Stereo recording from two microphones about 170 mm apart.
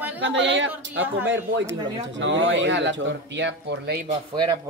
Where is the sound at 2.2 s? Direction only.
90° right.